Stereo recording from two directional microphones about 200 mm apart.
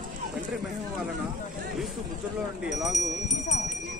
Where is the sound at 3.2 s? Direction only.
35° left (ahead or behind).